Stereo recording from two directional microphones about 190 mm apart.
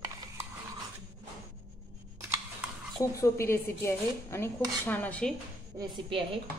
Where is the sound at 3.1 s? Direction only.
15° left (ahead or behind).